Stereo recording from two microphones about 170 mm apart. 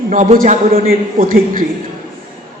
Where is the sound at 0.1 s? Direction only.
45° right (ahead or behind).